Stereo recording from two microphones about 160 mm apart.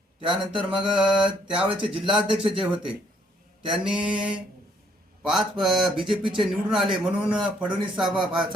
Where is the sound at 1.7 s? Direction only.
30° right (ahead or behind).